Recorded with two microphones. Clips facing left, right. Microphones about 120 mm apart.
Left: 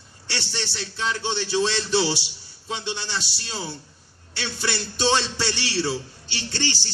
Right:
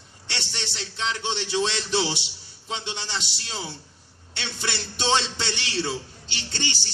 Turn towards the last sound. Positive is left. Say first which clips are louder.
# left 4 dB
turn(degrees=-20)  # may be behind; listen again after turning